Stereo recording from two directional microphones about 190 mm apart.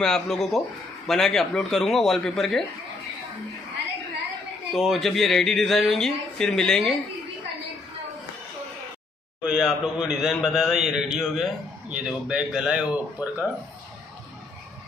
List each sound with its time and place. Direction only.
0.0 s a man's voice: 5° left (ahead or behind)
4.7 s a man's voice: centre (ahead or behind)
9.4 s a man's voice: 5° right (ahead or behind)